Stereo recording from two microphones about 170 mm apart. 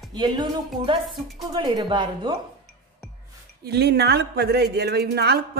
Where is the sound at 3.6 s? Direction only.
75° right (ahead or behind).